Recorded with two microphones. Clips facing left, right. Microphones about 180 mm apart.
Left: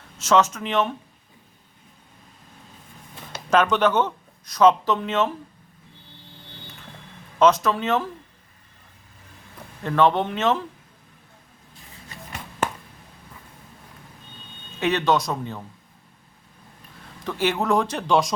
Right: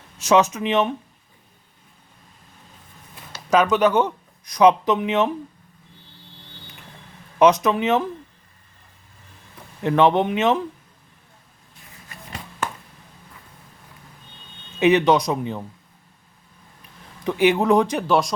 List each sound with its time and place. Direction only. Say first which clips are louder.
0.2 s speech: right 2 dB; 15° right (ahead or behind)
3.5 s speech: right 2 dB; 10° right (ahead or behind)
7.3 s speech: right 2 dB; 15° right (ahead or behind)
9.8 s speech: right 3 dB; 20° right (ahead or behind)
14.8 s speech: right 5 dB; 15° right (ahead or behind)
17.2 s speech: right 5 dB; 15° right (ahead or behind)